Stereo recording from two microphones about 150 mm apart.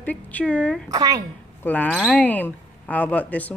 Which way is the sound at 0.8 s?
25° right (ahead or behind).